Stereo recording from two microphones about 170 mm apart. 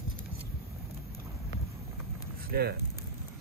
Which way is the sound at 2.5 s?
70° right (ahead or behind).